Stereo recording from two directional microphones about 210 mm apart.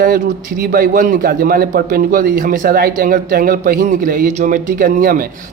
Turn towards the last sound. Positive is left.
turn(degrees=-40)  # may be behind; listen again after turning